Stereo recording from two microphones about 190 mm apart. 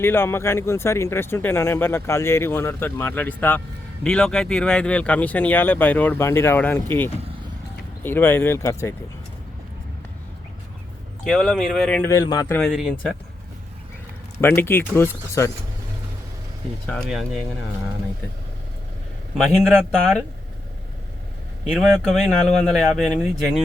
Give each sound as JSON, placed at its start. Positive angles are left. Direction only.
{"t": 0.0, "sound": "speech", "side_deg": 10}
{"t": 11.2, "sound": "speech", "side_deg": 5}
{"t": 12.1, "sound": "speech", "side_deg": 20}
{"t": 14.4, "sound": "speech", "side_deg": 10}
{"t": 16.9, "sound": "speech", "side_deg": 0}
{"t": 19.3, "sound": "a man's voice", "side_deg": 5}
{"t": 21.7, "sound": "speech", "side_deg": 0}